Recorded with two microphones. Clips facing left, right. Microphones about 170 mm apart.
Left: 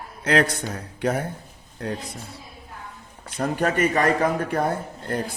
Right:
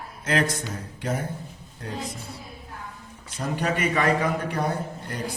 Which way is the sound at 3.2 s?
55° left (ahead or behind).